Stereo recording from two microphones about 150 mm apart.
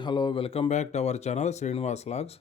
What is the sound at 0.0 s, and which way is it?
Speech, 30° left (ahead or behind).